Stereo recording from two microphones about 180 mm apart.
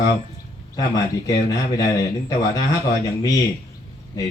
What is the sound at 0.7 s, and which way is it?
A man's voice, 20° left (ahead or behind).